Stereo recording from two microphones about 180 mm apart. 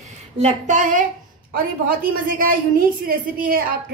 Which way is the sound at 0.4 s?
40° right (ahead or behind).